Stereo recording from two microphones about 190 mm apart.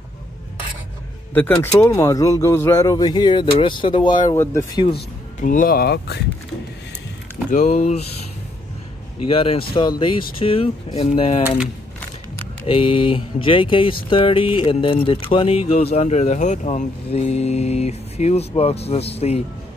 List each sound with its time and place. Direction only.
1.3 s speech: 10° left (ahead or behind)
4.9 s speech: 45° left (ahead or behind)
7.5 s speech: 40° left (ahead or behind)
9.3 s speech: 30° left (ahead or behind)
11.4 s speech: 5° right (ahead or behind)
12.6 s speech: 30° left (ahead or behind)